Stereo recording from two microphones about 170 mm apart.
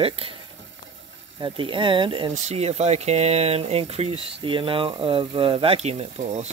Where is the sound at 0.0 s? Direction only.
35° right (ahead or behind).